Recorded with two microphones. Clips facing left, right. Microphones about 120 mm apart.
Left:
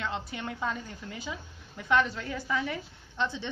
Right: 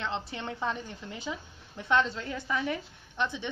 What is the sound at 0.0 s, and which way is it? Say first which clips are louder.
A woman's voice: even; 25° right (ahead or behind).